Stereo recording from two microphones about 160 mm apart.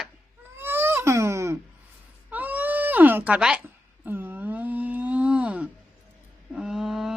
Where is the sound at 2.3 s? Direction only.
10° right (ahead or behind).